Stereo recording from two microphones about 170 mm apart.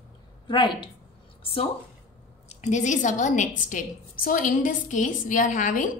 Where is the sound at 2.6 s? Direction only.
45° left (ahead or behind).